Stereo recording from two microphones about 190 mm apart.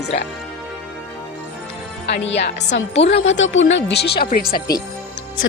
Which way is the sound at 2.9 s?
30° left (ahead or behind).